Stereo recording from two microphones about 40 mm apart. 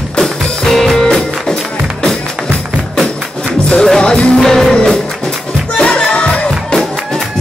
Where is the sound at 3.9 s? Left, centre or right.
Centre.